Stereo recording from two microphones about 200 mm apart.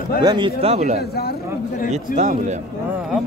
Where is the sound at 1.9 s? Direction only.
35° right (ahead or behind).